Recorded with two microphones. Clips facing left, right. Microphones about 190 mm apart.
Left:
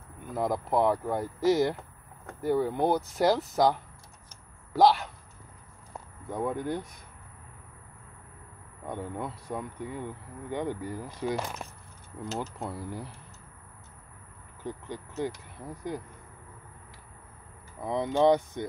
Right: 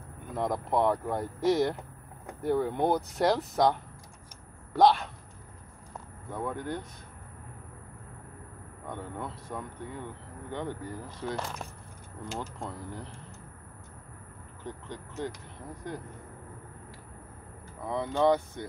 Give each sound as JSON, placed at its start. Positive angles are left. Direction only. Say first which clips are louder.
{"t": 0.3, "sound": "speech", "louder": "left 1 dB", "side_deg": 0}
{"t": 6.3, "sound": "speech", "louder": "left 3 dB", "side_deg": 15}
{"t": 8.8, "sound": "speech", "louder": "left 3 dB", "side_deg": 15}
{"t": 14.6, "sound": "vehicle", "louder": "left 3 dB", "side_deg": 10}
{"t": 15.8, "sound": "speech", "louder": "left 4 dB", "side_deg": 10}
{"t": 17.8, "sound": "speech", "louder": "left 2 dB", "side_deg": 15}